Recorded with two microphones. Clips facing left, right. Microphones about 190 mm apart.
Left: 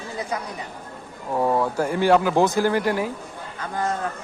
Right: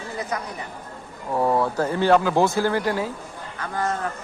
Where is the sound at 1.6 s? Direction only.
10° left (ahead or behind).